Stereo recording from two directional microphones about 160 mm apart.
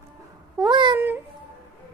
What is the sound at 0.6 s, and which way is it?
Child singing, 30° right (ahead or behind).